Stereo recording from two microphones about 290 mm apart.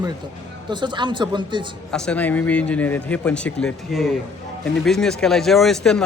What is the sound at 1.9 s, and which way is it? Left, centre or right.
Speech, centre.